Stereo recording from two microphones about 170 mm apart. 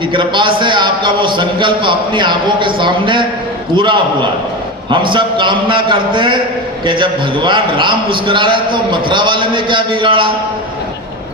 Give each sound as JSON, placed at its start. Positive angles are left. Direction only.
{"t": 0.1, "sound": "a man's voice", "side_deg": -30}